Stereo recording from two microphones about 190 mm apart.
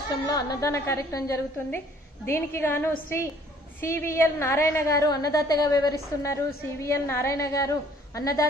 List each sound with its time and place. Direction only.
0.1 s a woman's voice: 20° left (ahead or behind)